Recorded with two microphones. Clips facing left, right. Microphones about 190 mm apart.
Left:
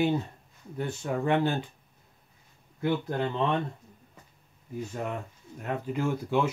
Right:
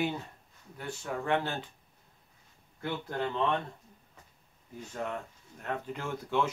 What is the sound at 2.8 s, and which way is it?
Speech, 15° left (ahead or behind).